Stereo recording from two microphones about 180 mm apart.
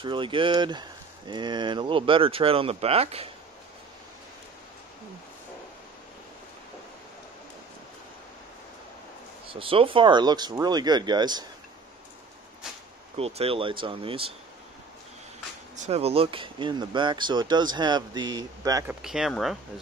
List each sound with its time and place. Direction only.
0.0 s speech: 25° right (ahead or behind)
9.5 s speech: 30° right (ahead or behind)
13.1 s speech: 35° right (ahead or behind)
15.7 s speech: 40° right (ahead or behind); by 18.9 s 20° right (ahead or behind)
19.0 s speech: centre (ahead or behind)